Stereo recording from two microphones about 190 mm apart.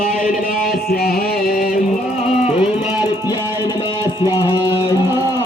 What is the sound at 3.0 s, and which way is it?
Music, 20° left (ahead or behind).